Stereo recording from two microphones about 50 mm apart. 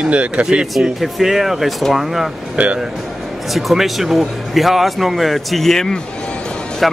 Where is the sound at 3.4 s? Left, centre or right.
Centre; by 6.8 s left.